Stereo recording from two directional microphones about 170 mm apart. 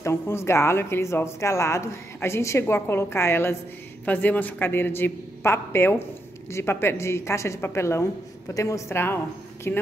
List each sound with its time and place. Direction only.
0.0 s speech: 15° left (ahead or behind)